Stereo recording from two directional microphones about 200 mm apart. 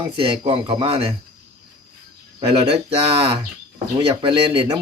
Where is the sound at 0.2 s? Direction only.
25° right (ahead or behind).